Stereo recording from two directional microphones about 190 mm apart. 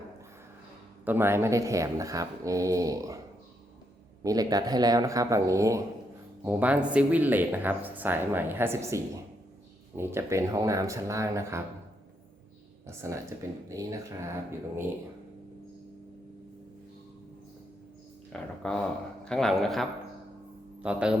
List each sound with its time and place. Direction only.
1.0 s speech: 10° right (ahead or behind)
4.2 s speech: 20° right (ahead or behind)
12.9 s speech: 15° right (ahead or behind)
18.3 s a man's voice: 5° left (ahead or behind)